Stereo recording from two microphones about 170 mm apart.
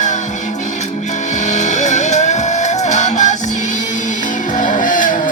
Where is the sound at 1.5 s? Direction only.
45° left (ahead or behind).